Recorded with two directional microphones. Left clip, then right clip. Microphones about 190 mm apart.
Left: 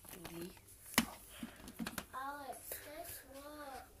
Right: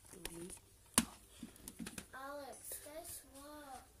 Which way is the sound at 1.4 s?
5° right (ahead or behind).